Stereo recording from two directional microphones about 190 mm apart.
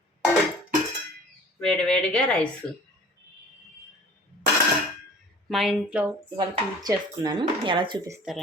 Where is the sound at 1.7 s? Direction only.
5° left (ahead or behind).